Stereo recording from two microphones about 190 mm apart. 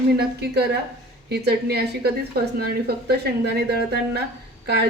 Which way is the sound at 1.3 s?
60° right (ahead or behind).